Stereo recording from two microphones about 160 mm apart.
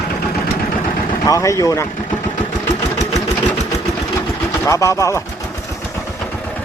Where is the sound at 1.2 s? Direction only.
20° left (ahead or behind).